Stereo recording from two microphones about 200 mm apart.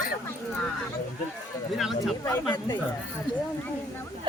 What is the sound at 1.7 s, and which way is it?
Speech, centre (ahead or behind).